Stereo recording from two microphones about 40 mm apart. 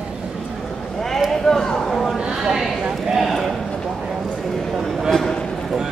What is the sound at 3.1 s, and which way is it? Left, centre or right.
Clip-clop, centre.